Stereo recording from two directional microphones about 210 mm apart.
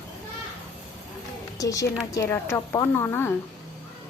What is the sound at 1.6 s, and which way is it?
A woman's voice, 15° left (ahead or behind).